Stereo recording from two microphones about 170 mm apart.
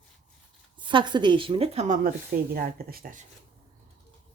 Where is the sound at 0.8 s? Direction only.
30° right (ahead or behind); by 2.1 s 50° right (ahead or behind).